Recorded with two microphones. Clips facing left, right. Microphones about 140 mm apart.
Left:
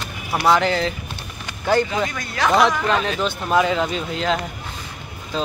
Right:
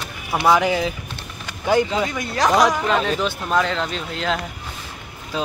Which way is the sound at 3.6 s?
10° left (ahead or behind).